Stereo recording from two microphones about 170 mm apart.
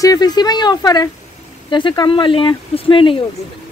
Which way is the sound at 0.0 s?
20° left (ahead or behind).